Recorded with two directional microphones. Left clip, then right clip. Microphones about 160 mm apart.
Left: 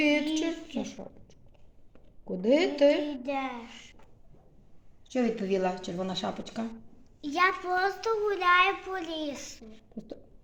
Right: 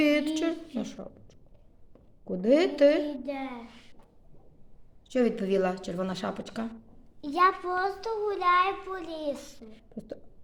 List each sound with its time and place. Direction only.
0.0 s a sound: 15° right (ahead or behind)
2.2 s speech: 15° right (ahead or behind)
3.2 s a woman's voice: 15° left (ahead or behind)
5.0 s speech: 10° right (ahead or behind)
7.3 s a child's voice: 50° right (ahead or behind)
7.7 s a child's voice: 25° right (ahead or behind); by 9.6 s 50° right (ahead or behind)
9.6 s a sound: 10° right (ahead or behind)